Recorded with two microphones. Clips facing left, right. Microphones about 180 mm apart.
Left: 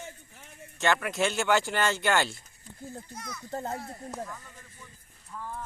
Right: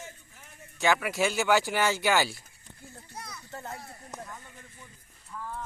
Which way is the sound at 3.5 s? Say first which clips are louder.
Left 7 dB; 35° left (ahead or behind).